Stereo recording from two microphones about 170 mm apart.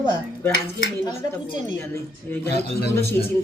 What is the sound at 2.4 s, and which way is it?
Speech, 70° left (ahead or behind).